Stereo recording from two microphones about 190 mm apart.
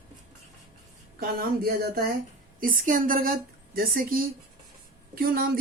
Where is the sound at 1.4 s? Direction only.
50° right (ahead or behind).